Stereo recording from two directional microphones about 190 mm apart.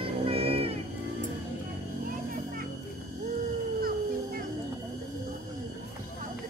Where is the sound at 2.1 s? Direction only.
45° right (ahead or behind).